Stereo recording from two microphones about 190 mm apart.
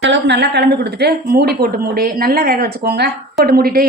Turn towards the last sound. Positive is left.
turn(degrees=-55)  # may be behind; listen again after turning